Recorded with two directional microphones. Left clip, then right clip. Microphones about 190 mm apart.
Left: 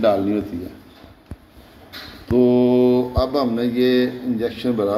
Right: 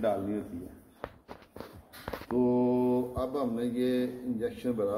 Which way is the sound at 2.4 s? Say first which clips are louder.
Left 12 dB; 20° left (ahead or behind).